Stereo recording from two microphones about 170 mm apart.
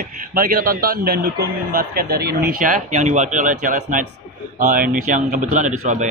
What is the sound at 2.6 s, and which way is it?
A man's voice, 45° right (ahead or behind).